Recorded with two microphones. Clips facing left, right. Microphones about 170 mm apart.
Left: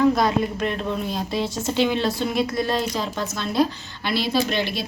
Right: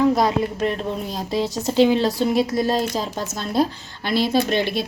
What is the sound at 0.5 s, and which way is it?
A woman's voice, 35° right (ahead or behind).